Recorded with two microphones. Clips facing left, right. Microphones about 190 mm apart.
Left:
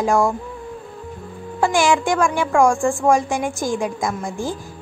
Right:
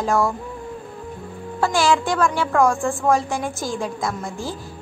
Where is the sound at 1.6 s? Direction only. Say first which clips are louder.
Left 2 dB; 15° left (ahead or behind).